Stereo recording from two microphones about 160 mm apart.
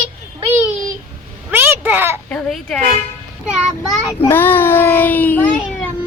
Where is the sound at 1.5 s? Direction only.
15° right (ahead or behind).